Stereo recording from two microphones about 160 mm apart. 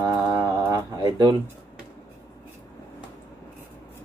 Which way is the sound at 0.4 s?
25° right (ahead or behind).